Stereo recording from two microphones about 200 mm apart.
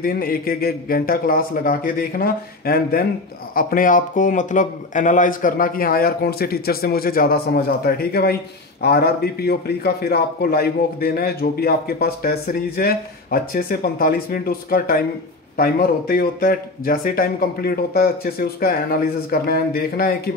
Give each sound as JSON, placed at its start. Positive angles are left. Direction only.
{"t": 0.0, "sound": "a man's voice", "side_deg": 45}